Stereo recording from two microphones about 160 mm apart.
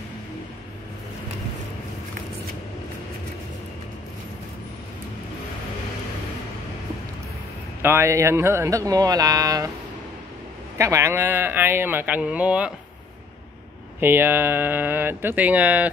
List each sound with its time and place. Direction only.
7.8 s speech: 15° right (ahead or behind)
10.8 s speech: 20° right (ahead or behind)
13.9 s speech: 15° right (ahead or behind)